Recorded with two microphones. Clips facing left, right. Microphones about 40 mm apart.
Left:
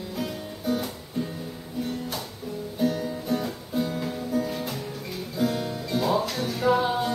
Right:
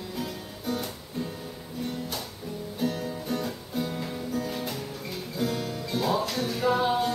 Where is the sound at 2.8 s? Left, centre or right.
Centre.